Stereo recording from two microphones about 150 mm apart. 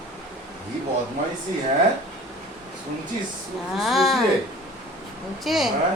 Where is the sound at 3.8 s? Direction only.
Centre (ahead or behind).